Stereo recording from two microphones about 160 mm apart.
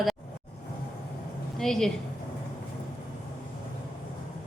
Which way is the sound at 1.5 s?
Centre (ahead or behind).